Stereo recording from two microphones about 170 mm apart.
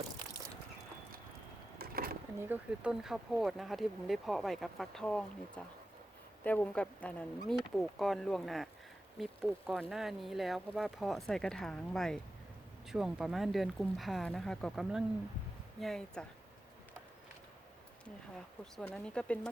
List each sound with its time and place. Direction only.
1.8 s a sound: 60° right (ahead or behind)
2.4 s a woman's voice: 10° right (ahead or behind)
18.6 s speech: 5° left (ahead or behind)